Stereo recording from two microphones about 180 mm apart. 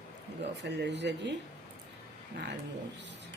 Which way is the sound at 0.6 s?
70° right (ahead or behind).